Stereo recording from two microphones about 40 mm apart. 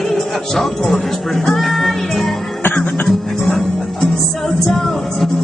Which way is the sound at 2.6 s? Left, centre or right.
Left.